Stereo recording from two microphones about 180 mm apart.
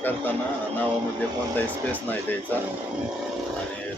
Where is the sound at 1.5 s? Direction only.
10° left (ahead or behind).